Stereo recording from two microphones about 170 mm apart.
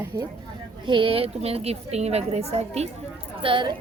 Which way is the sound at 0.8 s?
30° right (ahead or behind).